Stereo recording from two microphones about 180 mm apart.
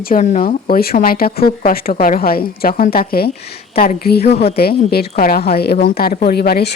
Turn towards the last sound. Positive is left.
turn(degrees=60)  # may be behind; listen again after turning